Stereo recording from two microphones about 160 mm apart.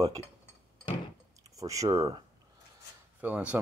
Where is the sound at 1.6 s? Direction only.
20° right (ahead or behind).